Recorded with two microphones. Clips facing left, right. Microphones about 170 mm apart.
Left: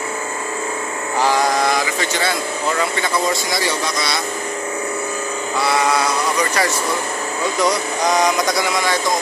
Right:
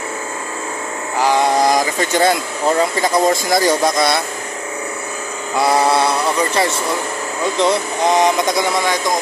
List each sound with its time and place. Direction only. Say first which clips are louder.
1.5 s a sound: right 4 dB; 40° right (ahead or behind)
2.8 s speech: right 5 dB; 45° right (ahead or behind)
5.7 s speech: right 4 dB; 30° right (ahead or behind)